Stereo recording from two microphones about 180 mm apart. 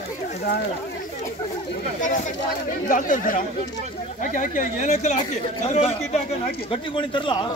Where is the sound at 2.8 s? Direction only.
50° left (ahead or behind); by 7.5 s 25° left (ahead or behind).